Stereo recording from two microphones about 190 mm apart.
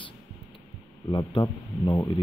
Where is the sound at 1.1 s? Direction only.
25° left (ahead or behind).